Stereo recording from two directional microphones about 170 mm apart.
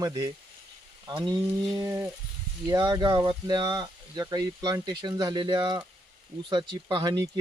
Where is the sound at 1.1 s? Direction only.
25° right (ahead or behind).